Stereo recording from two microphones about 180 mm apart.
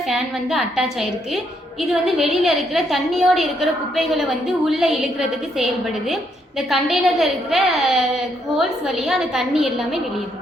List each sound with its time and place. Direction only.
0.0 s a woman's voice: centre (ahead or behind)
6.6 s a woman's voice: centre (ahead or behind)